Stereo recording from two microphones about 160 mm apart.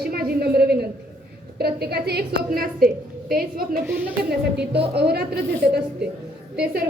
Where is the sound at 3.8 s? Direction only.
10° right (ahead or behind).